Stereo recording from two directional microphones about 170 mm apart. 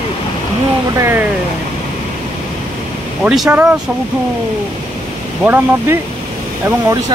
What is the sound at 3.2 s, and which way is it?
Speech, 5° right (ahead or behind).